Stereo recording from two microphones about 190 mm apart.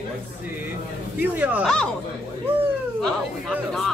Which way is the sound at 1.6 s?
5° left (ahead or behind).